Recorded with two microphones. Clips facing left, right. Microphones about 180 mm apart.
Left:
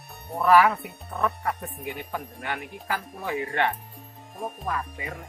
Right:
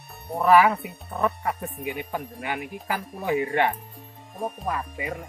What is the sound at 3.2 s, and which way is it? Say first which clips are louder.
Speech: right 4 dB; 20° right (ahead or behind).